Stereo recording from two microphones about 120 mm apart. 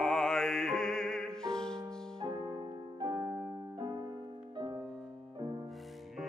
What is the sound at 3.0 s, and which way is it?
Music, 30° right (ahead or behind).